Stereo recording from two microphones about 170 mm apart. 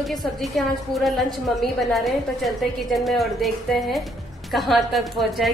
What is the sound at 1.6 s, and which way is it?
A woman's voice, centre (ahead or behind).